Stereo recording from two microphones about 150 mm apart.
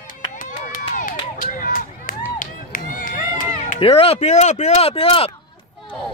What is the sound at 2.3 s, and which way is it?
Music, 65° left (ahead or behind).